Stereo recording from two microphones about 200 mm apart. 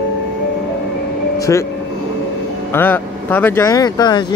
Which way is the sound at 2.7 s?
10° left (ahead or behind).